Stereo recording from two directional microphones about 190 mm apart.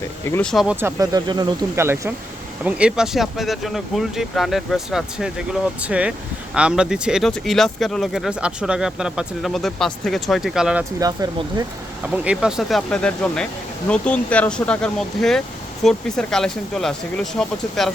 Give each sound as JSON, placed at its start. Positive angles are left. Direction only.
{"t": 0.3, "sound": "speech", "side_deg": 10}
{"t": 0.5, "sound": "speech", "side_deg": -5}
{"t": 11.0, "sound": "speech", "side_deg": -20}
{"t": 12.1, "sound": "speech", "side_deg": -5}